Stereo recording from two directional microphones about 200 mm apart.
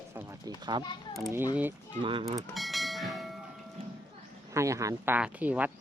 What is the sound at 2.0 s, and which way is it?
Speech, 25° right (ahead or behind).